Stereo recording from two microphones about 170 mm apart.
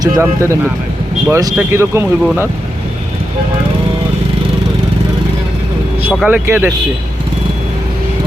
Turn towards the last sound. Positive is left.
turn(degrees=-10)  # may be behind; listen again after turning